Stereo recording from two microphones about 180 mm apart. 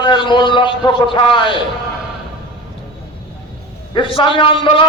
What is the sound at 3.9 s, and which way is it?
Speech, 25° left (ahead or behind).